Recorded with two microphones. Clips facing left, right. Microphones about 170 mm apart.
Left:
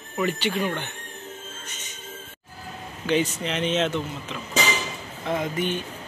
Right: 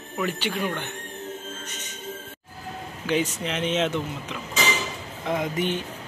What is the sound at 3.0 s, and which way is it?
Speech, 5° right (ahead or behind).